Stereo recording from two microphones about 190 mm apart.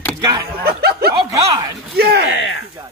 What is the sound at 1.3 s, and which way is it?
Speech, 20° right (ahead or behind).